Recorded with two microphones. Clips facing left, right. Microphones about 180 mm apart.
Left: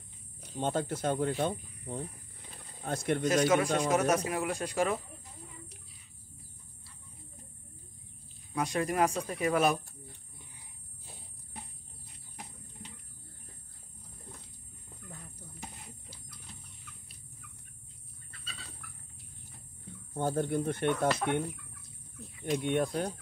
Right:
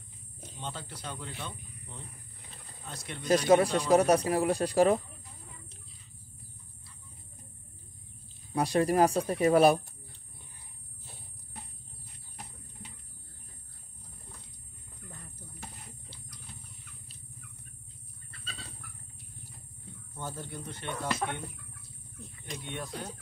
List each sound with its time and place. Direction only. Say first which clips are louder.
0.6 s speech: left 11 dB; 50° left (ahead or behind)
2.5 s wild animals: left 10 dB; 55° left (ahead or behind)
3.3 s speech: right 4 dB; 35° right (ahead or behind)
8.5 s speech: right 5 dB; 35° right (ahead or behind)
15.0 s a sound: even; centre (ahead or behind)
20.2 s speech: left 11 dB; 55° left (ahead or behind)
22.6 s speech: left 9 dB; 55° left (ahead or behind)